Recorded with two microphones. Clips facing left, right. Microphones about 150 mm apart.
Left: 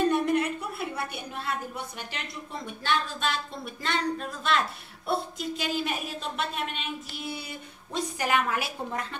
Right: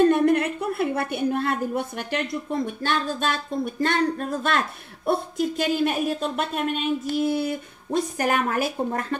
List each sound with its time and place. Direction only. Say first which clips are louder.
0.1 s a woman's voice: right 6 dB; 55° right (ahead or behind)